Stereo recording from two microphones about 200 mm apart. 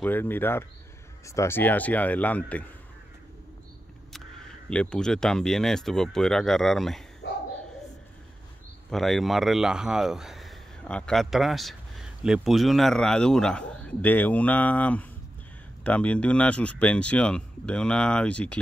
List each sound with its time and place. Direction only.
0.0 s speech: 10° left (ahead or behind)
4.6 s speech: 5° left (ahead or behind)
7.2 s dog: 60° left (ahead or behind)
8.9 s speech: centre (ahead or behind)